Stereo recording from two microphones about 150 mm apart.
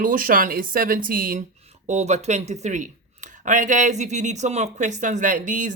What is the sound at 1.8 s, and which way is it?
Speech, 50° right (ahead or behind).